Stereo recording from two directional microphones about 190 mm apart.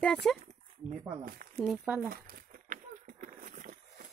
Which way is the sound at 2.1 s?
50° right (ahead or behind).